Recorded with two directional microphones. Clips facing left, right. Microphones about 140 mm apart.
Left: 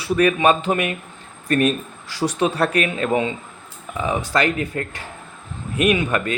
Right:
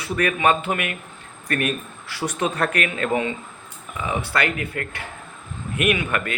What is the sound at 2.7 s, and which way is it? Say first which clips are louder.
Speech: left 3 dB; 25° left (ahead or behind).